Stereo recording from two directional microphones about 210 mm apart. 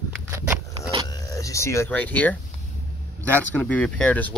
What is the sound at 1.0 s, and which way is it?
Power windows, 15° left (ahead or behind).